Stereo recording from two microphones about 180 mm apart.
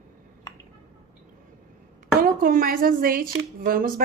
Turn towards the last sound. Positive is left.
turn(degrees=-50)  # may be behind; listen again after turning